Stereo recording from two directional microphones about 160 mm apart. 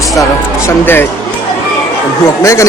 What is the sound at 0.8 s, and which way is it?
Speech, 15° left (ahead or behind).